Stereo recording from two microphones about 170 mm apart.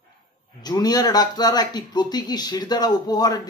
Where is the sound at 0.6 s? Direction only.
25° left (ahead or behind).